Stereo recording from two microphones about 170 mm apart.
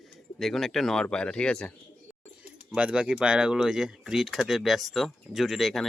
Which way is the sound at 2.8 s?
5° right (ahead or behind).